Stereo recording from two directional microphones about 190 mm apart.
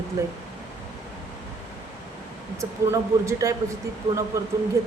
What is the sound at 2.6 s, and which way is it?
Speech, 15° right (ahead or behind).